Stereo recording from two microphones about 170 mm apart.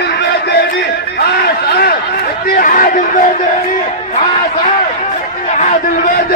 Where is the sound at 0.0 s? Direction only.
75° left (ahead or behind).